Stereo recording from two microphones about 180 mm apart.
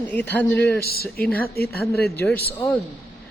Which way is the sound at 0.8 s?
60° left (ahead or behind).